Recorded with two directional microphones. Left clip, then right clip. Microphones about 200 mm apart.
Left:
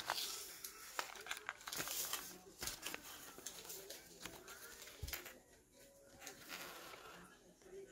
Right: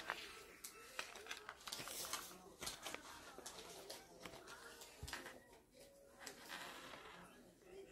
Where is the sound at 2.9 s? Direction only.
40° left (ahead or behind).